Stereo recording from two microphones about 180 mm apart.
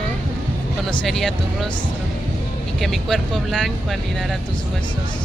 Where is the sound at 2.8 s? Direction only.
Centre (ahead or behind).